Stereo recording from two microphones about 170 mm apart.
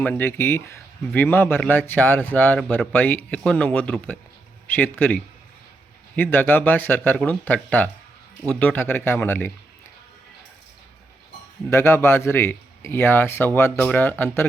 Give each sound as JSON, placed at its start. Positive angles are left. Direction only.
{"t": 0.0, "sound": "speech", "side_deg": 10}
{"t": 11.7, "sound": "speech", "side_deg": 15}